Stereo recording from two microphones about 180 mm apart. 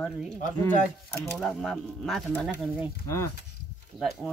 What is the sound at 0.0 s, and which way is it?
Speech, 5° left (ahead or behind).